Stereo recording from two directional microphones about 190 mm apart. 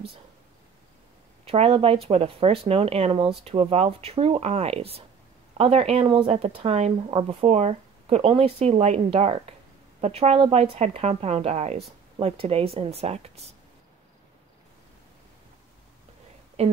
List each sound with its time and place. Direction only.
1.4 s speech: 30° right (ahead or behind)
16.6 s speech: 35° right (ahead or behind)